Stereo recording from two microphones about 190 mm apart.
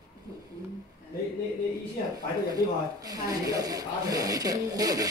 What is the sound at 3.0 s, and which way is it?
Speech, 20° right (ahead or behind).